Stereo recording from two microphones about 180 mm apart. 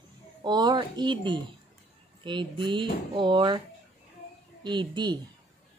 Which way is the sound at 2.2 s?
25° right (ahead or behind).